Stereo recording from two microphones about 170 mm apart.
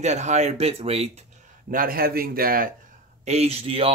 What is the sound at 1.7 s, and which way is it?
A man's voice, 55° right (ahead or behind).